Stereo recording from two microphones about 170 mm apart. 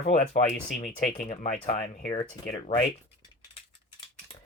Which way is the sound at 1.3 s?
40° left (ahead or behind).